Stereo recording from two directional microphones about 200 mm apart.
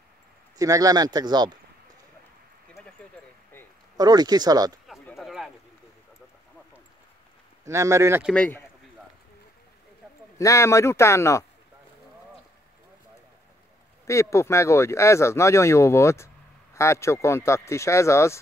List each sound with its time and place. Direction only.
0.6 s speech: 15° right (ahead or behind)
3.9 s speech: 20° right (ahead or behind)
4.8 s a sound: centre (ahead or behind)
7.6 s speech: 15° right (ahead or behind)
8.3 s speech: 5° left (ahead or behind)
10.3 s speech: 15° left (ahead or behind)
14.0 s speech: 15° left (ahead or behind)